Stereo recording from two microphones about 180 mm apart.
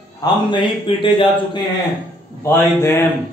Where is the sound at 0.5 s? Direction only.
30° left (ahead or behind).